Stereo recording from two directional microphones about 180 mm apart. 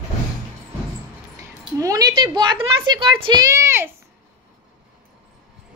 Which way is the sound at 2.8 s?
25° right (ahead or behind).